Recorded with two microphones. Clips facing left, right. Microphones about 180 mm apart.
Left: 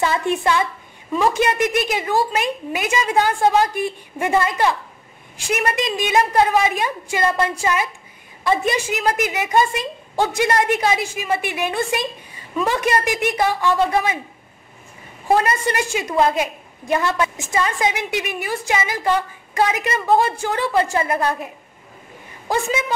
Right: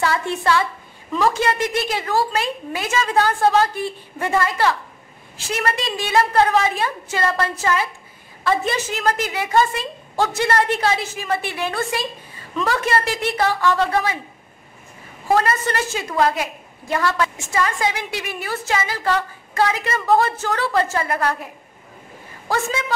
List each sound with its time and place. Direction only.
0.0 s a woman's voice: 20° left (ahead or behind)
15.3 s a woman's voice: 15° left (ahead or behind)
22.5 s a woman's voice: 15° left (ahead or behind)